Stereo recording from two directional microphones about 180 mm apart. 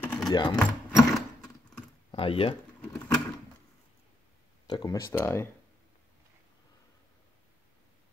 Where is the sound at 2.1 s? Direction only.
30° left (ahead or behind).